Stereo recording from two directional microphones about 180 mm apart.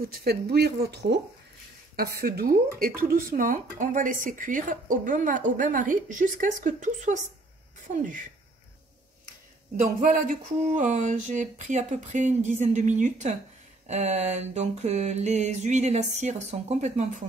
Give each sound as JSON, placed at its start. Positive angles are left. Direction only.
{"t": 0.0, "sound": "speech", "side_deg": -60}
{"t": 2.0, "sound": "speech", "side_deg": -55}
{"t": 10.0, "sound": "speech", "side_deg": -50}
{"t": 13.8, "sound": "mantra", "side_deg": -40}